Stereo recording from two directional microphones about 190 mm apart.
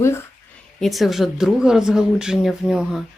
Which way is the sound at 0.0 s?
15° left (ahead or behind).